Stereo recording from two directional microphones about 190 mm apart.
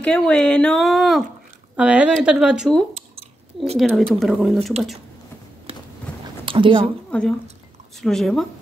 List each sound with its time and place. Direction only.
0.0 s speech: 5° left (ahead or behind)
6.4 s a sound: 25° right (ahead or behind)
7.1 s speech: 5° left (ahead or behind)